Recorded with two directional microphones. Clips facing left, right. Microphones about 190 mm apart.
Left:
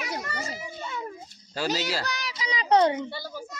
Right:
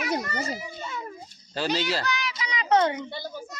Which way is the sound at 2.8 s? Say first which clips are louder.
Left 2 dB; 25° left (ahead or behind).